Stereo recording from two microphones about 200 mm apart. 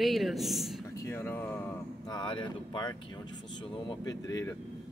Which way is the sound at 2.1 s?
25° left (ahead or behind).